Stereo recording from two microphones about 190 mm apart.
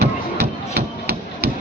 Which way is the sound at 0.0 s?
60° right (ahead or behind).